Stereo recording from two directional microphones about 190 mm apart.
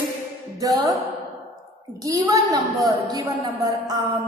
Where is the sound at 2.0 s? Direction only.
20° right (ahead or behind).